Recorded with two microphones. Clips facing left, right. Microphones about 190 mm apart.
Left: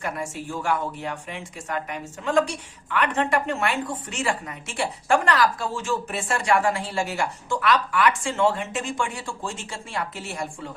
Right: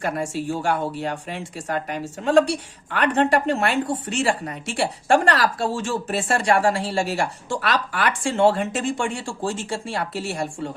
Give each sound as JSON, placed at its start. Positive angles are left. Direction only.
{"t": 0.0, "sound": "speech", "side_deg": -30}